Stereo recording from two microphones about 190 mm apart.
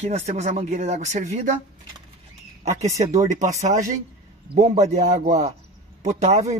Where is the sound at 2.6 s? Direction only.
35° right (ahead or behind).